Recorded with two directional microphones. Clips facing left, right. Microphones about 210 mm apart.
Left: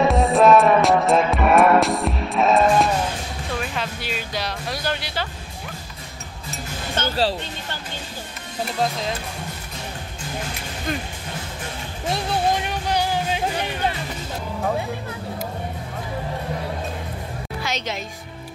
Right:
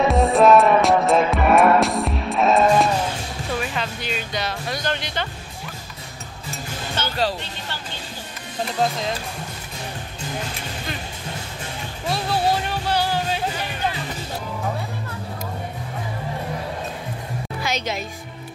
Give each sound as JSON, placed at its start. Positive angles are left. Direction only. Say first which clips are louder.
{"t": 0.1, "sound": "music", "louder": "right 2 dB", "side_deg": 0}
{"t": 7.0, "sound": "music", "louder": "left 3 dB", "side_deg": 50}
{"t": 12.1, "sound": "music", "louder": "even", "side_deg": 20}
{"t": 17.6, "sound": "speech", "louder": "right 2 dB", "side_deg": -10}